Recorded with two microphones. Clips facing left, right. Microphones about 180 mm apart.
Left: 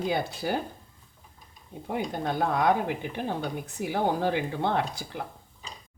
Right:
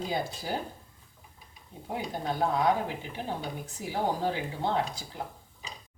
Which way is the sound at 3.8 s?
60° left (ahead or behind).